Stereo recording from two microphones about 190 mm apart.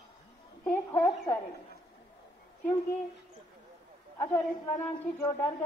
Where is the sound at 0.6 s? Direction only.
10° left (ahead or behind).